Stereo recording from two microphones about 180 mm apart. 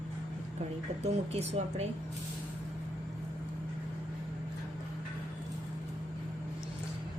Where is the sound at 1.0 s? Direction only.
35° right (ahead or behind).